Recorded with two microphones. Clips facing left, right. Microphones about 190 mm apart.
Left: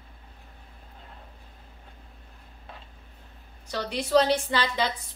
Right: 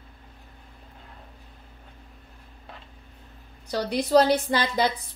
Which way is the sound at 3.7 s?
35° right (ahead or behind).